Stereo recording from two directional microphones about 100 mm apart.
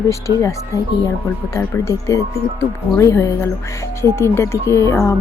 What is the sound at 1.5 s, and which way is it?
Speech, 30° left (ahead or behind).